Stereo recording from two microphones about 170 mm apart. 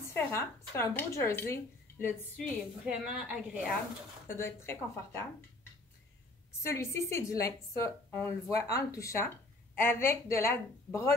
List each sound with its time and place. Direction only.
0.1 s a woman's voice: 15° left (ahead or behind)
2.3 s a woman's voice: centre (ahead or behind)
4.3 s a woman's voice: 15° left (ahead or behind)